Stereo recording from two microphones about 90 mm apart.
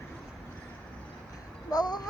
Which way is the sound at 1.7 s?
50° left (ahead or behind).